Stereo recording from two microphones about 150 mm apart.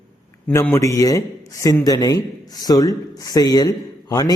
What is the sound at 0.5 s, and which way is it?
A man's voice, 15° left (ahead or behind).